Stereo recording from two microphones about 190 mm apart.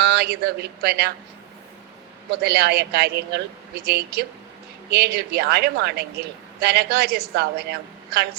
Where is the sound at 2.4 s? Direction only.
55° right (ahead or behind).